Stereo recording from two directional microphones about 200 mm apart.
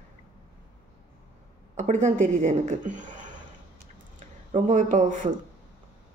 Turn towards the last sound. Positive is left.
turn(degrees=-40)  # may be behind; listen again after turning